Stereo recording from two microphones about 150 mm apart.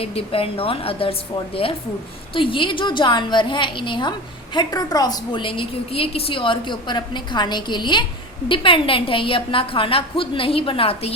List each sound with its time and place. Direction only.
0.0 s a woman's voice: 40° left (ahead or behind)
2.3 s a woman's voice: 35° left (ahead or behind)